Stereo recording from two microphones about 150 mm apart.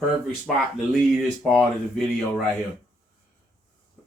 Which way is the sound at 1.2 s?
5° right (ahead or behind).